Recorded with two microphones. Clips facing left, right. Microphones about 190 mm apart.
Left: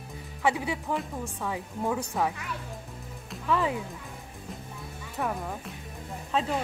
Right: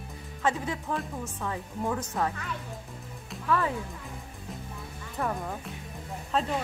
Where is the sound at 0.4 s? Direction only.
10° left (ahead or behind).